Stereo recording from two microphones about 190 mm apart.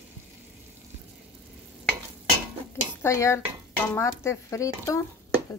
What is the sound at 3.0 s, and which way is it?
Speech, 15° left (ahead or behind).